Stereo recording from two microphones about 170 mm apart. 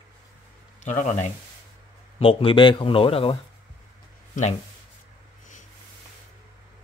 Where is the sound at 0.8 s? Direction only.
45° left (ahead or behind).